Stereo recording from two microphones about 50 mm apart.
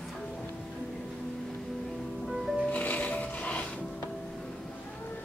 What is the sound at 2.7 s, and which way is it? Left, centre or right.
Music, left.